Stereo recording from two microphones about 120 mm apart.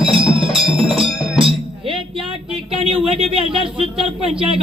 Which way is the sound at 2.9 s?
55° right (ahead or behind).